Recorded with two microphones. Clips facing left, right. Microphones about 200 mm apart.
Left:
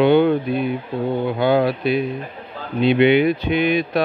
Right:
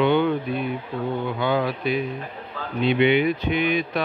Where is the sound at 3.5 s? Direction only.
35° left (ahead or behind).